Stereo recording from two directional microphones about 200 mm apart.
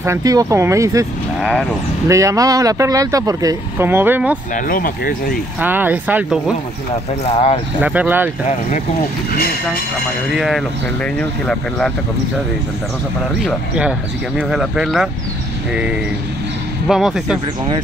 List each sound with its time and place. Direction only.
0.0 s speech: 15° right (ahead or behind)
1.4 s speech: centre (ahead or behind)
2.0 s speech: 15° right (ahead or behind)
4.6 s speech: 45° left (ahead or behind)
5.6 s speech: 10° right (ahead or behind)
7.2 s speech: 30° left (ahead or behind)
7.8 s speech: 10° right (ahead or behind)
10.3 s speech: centre (ahead or behind)
13.4 s speech: centre (ahead or behind)
16.8 s speech: centre (ahead or behind)